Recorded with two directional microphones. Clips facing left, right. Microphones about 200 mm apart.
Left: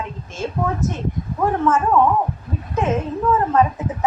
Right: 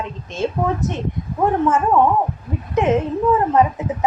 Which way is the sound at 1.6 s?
15° right (ahead or behind).